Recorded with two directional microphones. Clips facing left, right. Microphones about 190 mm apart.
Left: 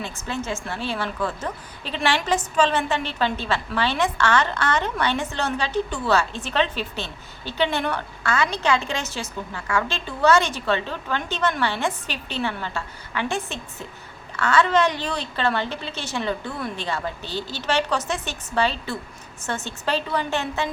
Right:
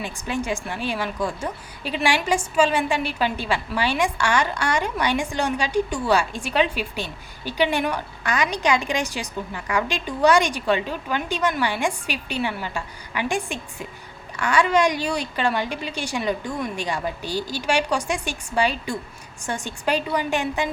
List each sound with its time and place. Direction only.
0.0 s a woman's voice: 15° right (ahead or behind)